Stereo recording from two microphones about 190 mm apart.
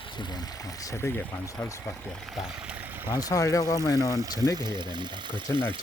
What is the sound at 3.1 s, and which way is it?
Speech, 20° left (ahead or behind).